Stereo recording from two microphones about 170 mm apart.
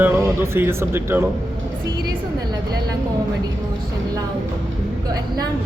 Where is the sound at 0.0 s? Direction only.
15° right (ahead or behind).